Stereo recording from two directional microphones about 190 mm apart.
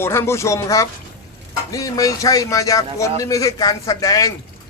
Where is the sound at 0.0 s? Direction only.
15° left (ahead or behind).